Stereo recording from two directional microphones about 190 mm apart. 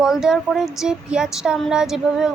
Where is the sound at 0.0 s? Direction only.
5° right (ahead or behind).